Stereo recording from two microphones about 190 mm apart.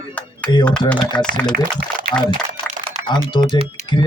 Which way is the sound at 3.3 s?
25° left (ahead or behind).